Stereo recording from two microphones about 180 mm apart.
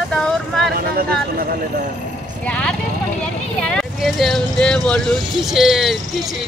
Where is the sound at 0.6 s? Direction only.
55° right (ahead or behind).